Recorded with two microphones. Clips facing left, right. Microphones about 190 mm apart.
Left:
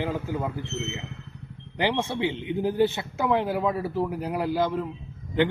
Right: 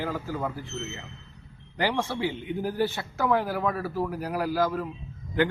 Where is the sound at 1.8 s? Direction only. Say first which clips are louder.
Left 2 dB; 20° left (ahead or behind).